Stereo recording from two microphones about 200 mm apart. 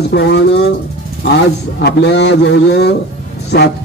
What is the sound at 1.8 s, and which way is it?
A man's voice, 60° left (ahead or behind).